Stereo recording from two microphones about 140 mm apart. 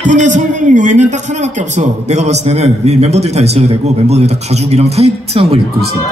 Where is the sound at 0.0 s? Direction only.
60° right (ahead or behind); by 5.9 s 45° right (ahead or behind).